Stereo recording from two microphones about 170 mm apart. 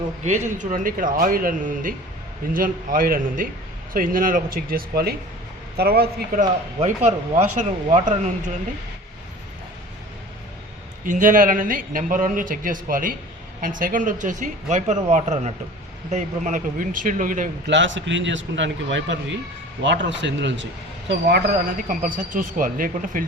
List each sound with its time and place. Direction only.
0.3 s a man's voice: 45° right (ahead or behind); by 6.4 s 65° right (ahead or behind)
6.7 s speech: 40° right (ahead or behind)
11.0 s a man's voice: 50° right (ahead or behind)
17.7 s a man's voice: 90° right
21.1 s a man's voice: 70° right (ahead or behind); by 23.2 s 55° right (ahead or behind)